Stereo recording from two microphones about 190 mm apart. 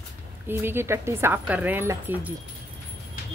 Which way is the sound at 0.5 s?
10° right (ahead or behind).